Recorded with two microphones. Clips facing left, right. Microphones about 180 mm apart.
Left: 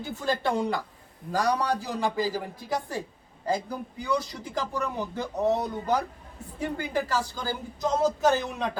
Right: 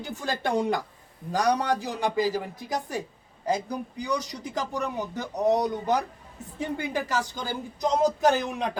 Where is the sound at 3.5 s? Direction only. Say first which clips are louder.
Right 1 dB; 15° right (ahead or behind).